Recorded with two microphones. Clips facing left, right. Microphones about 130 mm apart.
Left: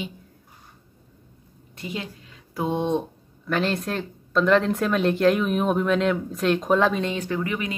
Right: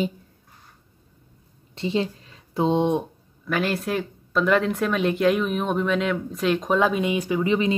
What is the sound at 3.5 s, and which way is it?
Speech, 5° right (ahead or behind).